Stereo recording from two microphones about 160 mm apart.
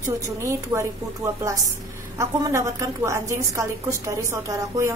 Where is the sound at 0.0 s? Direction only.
20° right (ahead or behind).